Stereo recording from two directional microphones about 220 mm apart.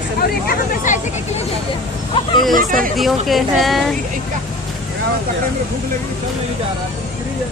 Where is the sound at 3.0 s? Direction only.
Centre (ahead or behind).